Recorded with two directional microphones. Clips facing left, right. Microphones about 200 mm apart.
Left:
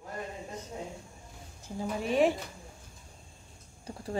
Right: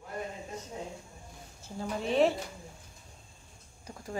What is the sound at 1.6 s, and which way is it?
Speech, 10° left (ahead or behind).